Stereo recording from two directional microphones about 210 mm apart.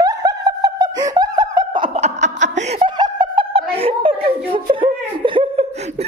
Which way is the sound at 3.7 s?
25° right (ahead or behind).